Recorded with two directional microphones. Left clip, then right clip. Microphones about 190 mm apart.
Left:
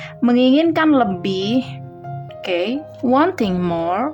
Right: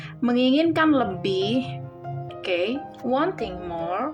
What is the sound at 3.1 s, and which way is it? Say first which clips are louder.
Speech: left 8 dB; 35° left (ahead or behind).